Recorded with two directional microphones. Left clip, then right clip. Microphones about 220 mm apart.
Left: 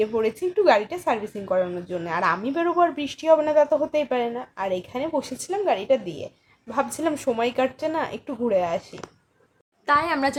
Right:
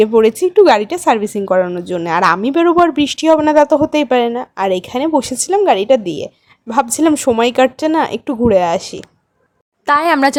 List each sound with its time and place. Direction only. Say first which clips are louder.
0.0 s speech: right 13 dB; 50° right (ahead or behind)